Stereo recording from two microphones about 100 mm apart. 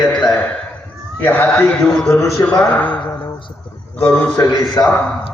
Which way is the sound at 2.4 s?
15° left (ahead or behind).